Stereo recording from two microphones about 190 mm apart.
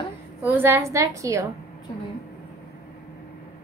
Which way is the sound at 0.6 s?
10° right (ahead or behind).